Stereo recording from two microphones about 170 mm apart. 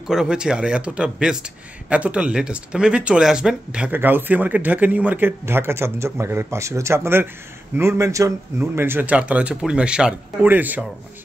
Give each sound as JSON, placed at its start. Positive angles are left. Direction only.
{"t": 0.1, "sound": "speech", "side_deg": -5}